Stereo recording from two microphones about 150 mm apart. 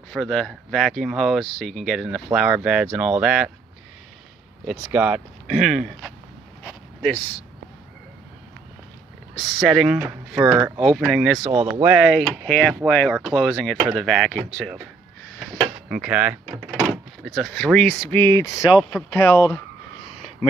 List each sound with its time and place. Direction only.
0.1 s speech: 5° left (ahead or behind)
4.6 s speech: 5° right (ahead or behind)
9.3 s speech: centre (ahead or behind)
11.5 s speech: 40° right (ahead or behind)
11.8 s speech: 5° right (ahead or behind)
15.9 s speech: 5° right (ahead or behind)
18.1 s speech: 20° left (ahead or behind)
18.8 s speech: centre (ahead or behind)
19.1 s speech: 15° left (ahead or behind)